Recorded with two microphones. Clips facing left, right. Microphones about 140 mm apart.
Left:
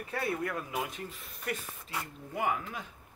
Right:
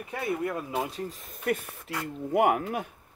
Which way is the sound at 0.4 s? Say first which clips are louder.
Right 4 dB; 20° right (ahead or behind).